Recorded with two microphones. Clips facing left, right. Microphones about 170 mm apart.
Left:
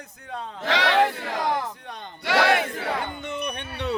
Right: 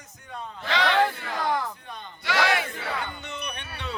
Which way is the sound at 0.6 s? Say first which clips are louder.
Left 2 dB; 75° left (ahead or behind).